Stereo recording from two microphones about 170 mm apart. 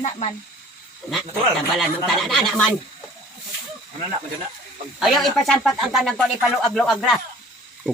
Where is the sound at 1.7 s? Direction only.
Centre (ahead or behind).